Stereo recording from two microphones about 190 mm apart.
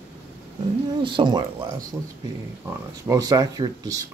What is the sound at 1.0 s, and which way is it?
Speech, 25° right (ahead or behind).